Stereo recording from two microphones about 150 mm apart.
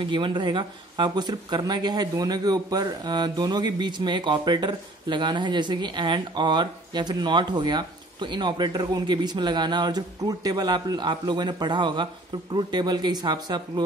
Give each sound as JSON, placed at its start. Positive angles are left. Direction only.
{"t": 0.0, "sound": "speech", "side_deg": -35}